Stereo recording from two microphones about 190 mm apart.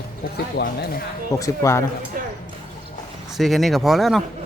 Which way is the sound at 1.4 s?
15° left (ahead or behind).